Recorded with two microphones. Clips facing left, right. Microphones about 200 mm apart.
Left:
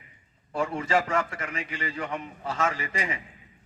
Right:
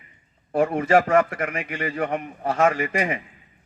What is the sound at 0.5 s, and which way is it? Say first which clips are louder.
A man's voice: right 7 dB; 55° right (ahead or behind).